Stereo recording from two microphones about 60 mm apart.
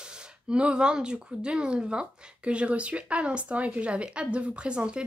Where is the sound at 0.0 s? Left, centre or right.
Centre.